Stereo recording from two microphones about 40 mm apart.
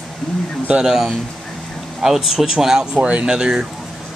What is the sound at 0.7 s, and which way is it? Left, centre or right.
Speech, centre.